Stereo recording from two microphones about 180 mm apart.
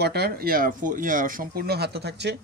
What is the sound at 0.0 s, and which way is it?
Speech, 65° right (ahead or behind).